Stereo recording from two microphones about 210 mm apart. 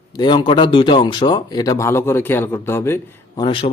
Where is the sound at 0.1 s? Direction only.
20° left (ahead or behind).